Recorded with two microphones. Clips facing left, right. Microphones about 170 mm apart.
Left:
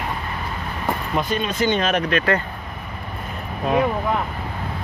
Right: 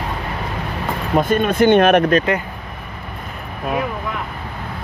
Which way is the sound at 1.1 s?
50° right (ahead or behind).